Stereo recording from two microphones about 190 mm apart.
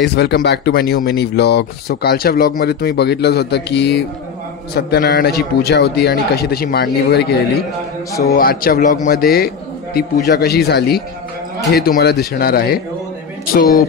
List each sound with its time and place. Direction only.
0.0 s speech: 60° left (ahead or behind)
8.4 s speech: 50° left (ahead or behind)